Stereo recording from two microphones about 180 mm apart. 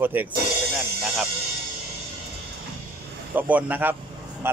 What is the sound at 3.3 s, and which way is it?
Speech, 10° right (ahead or behind).